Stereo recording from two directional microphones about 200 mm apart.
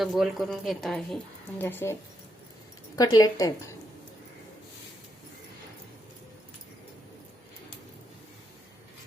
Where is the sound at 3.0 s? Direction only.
20° left (ahead or behind).